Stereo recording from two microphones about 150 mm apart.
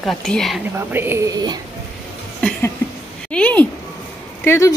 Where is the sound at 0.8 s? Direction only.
15° right (ahead or behind).